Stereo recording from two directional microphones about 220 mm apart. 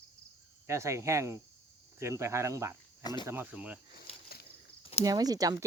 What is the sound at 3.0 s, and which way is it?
Speech, 20° left (ahead or behind).